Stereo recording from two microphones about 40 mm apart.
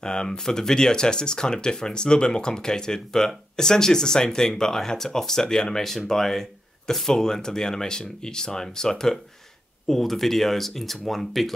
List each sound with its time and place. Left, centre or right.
0.0 s speech: centre
5.8 s speech: centre